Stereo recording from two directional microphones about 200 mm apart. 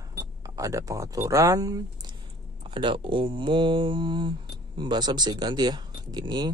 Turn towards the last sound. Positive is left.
turn(degrees=-20)  # may be behind; listen again after turning